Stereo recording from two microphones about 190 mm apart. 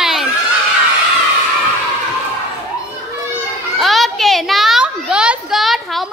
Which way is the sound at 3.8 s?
Centre (ahead or behind).